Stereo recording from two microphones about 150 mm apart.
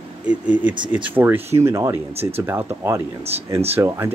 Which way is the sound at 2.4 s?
15° right (ahead or behind).